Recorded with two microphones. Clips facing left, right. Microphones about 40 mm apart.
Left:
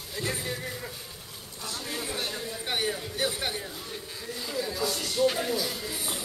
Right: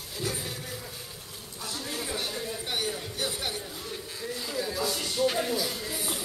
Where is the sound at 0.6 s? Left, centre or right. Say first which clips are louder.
Left 3 dB; centre.